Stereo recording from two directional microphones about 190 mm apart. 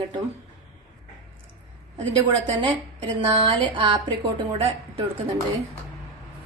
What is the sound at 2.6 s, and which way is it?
A woman's voice, 25° right (ahead or behind).